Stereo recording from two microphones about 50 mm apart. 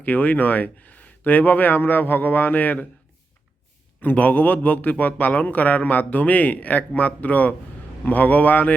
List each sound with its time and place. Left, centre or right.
0.0 s a man's voice: left
4.0 s a man's voice: left